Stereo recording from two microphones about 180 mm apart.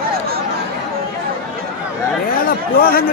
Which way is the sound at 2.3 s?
50° left (ahead or behind).